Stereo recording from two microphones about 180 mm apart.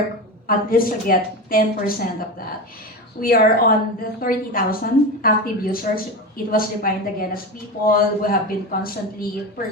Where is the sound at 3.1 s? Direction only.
55° left (ahead or behind).